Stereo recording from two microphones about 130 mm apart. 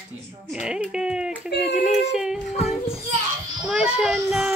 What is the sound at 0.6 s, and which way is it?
Speech, 5° right (ahead or behind).